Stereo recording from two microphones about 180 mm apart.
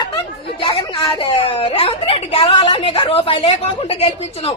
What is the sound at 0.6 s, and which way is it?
A woman's voice, 30° left (ahead or behind).